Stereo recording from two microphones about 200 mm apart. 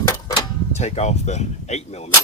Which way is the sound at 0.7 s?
35° left (ahead or behind).